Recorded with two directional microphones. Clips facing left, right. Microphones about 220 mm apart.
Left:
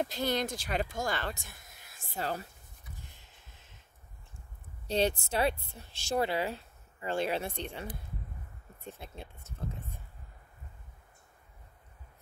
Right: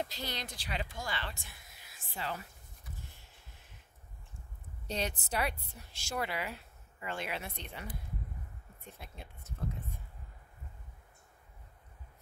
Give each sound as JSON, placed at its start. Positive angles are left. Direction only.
{"t": 0.0, "sound": "speech", "side_deg": 50}
{"t": 3.0, "sound": "a sound", "side_deg": 20}
{"t": 4.8, "sound": "a woman's voice", "side_deg": 30}